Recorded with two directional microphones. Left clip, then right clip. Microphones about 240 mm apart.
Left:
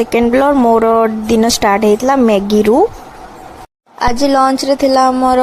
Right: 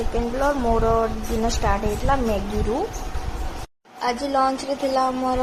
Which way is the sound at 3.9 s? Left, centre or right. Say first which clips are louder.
Left 10 dB; left.